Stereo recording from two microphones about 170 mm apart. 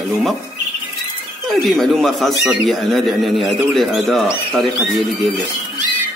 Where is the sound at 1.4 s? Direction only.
Centre (ahead or behind).